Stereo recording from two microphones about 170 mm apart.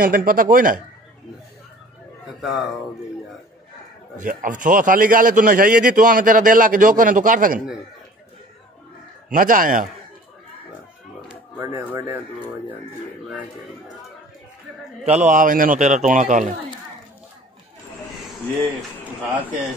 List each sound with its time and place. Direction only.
0.0 s speech: 60° right (ahead or behind)
2.2 s speech: centre (ahead or behind)
4.2 s a man's voice: 50° right (ahead or behind)
9.3 s a man's voice: 55° right (ahead or behind)
11.6 s speech: 15° right (ahead or behind)
15.0 s a man's voice: 45° right (ahead or behind)